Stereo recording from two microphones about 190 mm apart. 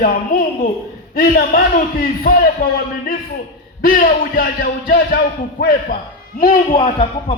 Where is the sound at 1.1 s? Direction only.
50° left (ahead or behind).